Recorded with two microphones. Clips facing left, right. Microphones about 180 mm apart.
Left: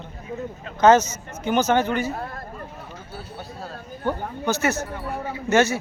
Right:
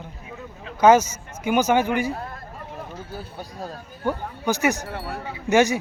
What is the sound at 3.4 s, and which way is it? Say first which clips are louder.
Speech: right 1 dB; 15° right (ahead or behind).